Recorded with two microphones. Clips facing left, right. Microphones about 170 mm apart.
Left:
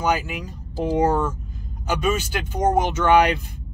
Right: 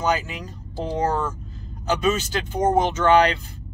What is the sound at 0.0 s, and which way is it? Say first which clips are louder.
Speech: left 1 dB; 10° left (ahead or behind).